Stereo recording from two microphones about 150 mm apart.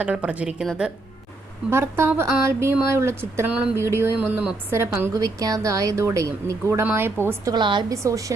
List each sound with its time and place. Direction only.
0.0 s a woman's voice: 10° right (ahead or behind)
1.7 s a woman's voice: 15° right (ahead or behind)
7.5 s a woman's voice: 30° right (ahead or behind)